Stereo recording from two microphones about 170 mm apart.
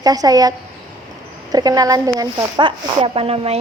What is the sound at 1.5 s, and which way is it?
Speech, 20° right (ahead or behind).